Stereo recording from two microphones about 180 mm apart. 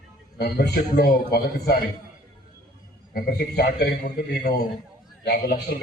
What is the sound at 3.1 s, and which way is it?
A man's voice, 60° left (ahead or behind).